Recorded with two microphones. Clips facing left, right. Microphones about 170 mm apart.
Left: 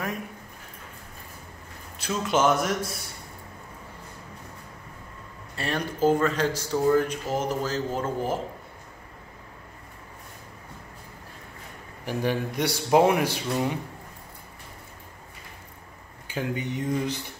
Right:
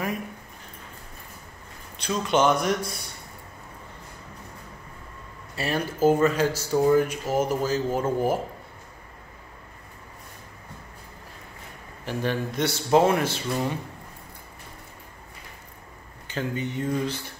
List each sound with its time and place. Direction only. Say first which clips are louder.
2.0 s speech: right 2 dB; 5° left (ahead or behind)
5.6 s speech: right 2 dB; 5° right (ahead or behind)
12.0 s speech: left 1 dB; 15° left (ahead or behind)
16.3 s speech: even; 10° left (ahead or behind)